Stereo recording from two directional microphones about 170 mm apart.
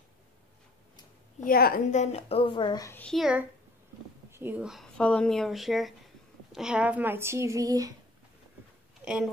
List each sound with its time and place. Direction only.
1.4 s a woman's voice: 60° left (ahead or behind); by 3.0 s 20° left (ahead or behind)
3.0 s a woman's voice: centre (ahead or behind); by 7.9 s 20° right (ahead or behind)
9.0 s speech: 5° right (ahead or behind)